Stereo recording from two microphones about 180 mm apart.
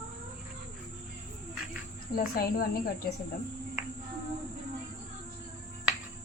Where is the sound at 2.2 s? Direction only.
55° left (ahead or behind).